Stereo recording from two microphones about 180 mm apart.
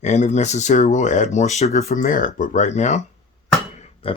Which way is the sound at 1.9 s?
50° left (ahead or behind).